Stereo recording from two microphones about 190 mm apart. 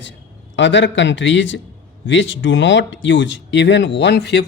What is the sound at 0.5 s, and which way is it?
Speech, 70° left (ahead or behind).